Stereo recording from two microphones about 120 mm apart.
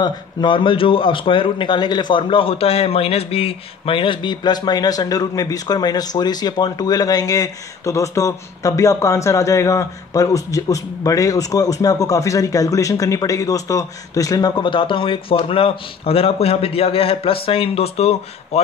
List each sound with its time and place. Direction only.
0.0 s a man's voice: 40° left (ahead or behind); by 18.6 s 60° left (ahead or behind)